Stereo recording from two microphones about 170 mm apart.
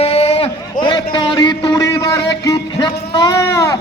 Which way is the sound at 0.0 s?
35° left (ahead or behind).